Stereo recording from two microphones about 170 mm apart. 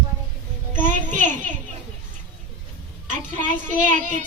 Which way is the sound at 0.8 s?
50° right (ahead or behind).